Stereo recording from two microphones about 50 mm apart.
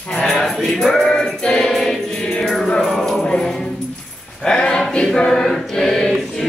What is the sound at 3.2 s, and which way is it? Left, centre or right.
Music, centre.